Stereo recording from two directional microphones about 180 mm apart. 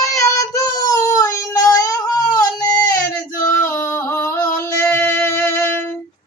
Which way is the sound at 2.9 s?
20° left (ahead or behind).